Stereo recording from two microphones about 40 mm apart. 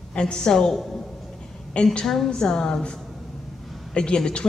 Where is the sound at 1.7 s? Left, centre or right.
Left.